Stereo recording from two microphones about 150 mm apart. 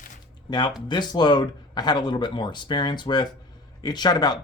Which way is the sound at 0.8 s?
30° left (ahead or behind).